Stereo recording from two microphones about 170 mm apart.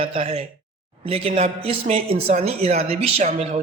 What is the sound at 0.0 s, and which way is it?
A man's voice, 35° right (ahead or behind).